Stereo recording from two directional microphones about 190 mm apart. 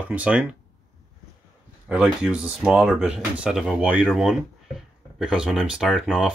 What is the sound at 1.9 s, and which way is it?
Speech, 5° right (ahead or behind).